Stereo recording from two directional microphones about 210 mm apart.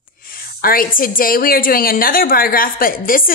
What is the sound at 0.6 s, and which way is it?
A woman's voice, 45° left (ahead or behind).